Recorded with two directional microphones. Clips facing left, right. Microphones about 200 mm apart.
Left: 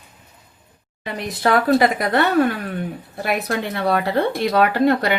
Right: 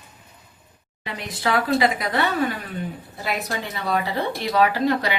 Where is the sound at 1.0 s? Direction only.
55° left (ahead or behind).